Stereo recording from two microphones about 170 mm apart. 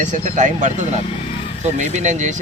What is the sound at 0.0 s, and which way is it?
Speech, 45° right (ahead or behind).